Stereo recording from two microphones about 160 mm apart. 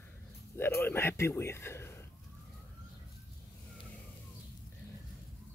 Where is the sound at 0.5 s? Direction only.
15° left (ahead or behind).